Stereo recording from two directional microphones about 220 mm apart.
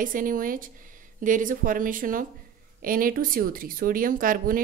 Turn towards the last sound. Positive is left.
turn(degrees=-40)  # may be behind; listen again after turning